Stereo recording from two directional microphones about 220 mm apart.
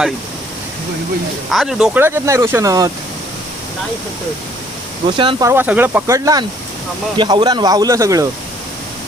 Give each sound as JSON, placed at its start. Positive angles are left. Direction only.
{"t": 1.5, "sound": "speech", "side_deg": 0}
{"t": 5.0, "sound": "speech", "side_deg": -25}